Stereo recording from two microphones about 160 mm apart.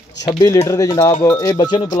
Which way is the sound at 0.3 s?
25° left (ahead or behind).